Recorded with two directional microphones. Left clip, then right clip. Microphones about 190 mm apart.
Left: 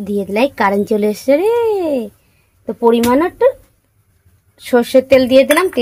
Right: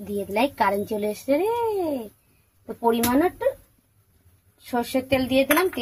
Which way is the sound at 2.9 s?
55° left (ahead or behind).